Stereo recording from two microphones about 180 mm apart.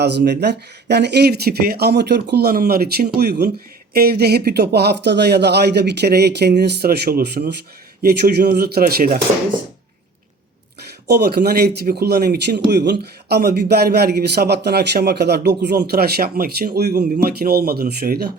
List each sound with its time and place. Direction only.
0.0 s speech: 70° right (ahead or behind)
11.0 s speech: 65° right (ahead or behind)